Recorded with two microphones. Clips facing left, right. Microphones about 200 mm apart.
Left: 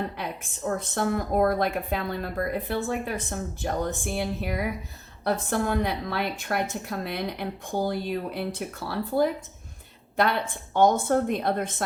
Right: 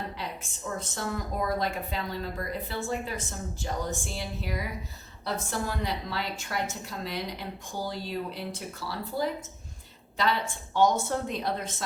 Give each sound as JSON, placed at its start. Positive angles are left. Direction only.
{"t": 0.2, "sound": "speech", "side_deg": 55}